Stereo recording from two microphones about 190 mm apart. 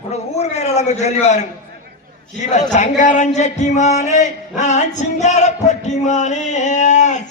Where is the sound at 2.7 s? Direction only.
40° left (ahead or behind).